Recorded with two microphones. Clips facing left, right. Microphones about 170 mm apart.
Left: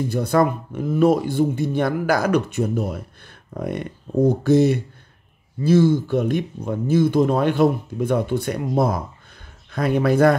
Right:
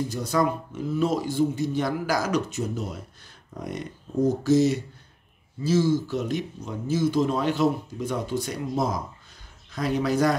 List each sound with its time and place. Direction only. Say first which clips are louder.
0.1 s speech: left 9 dB; 55° left (ahead or behind)